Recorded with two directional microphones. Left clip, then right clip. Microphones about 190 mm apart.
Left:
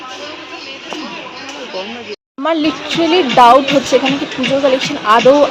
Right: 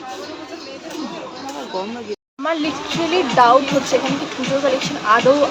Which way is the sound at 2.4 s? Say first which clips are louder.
Left 6 dB; 30° left (ahead or behind).